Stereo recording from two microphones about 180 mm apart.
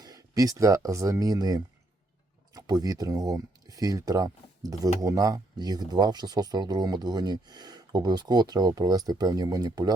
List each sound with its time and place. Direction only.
0.0 s speech: 20° right (ahead or behind)